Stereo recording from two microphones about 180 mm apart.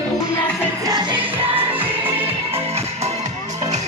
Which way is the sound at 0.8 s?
25° right (ahead or behind).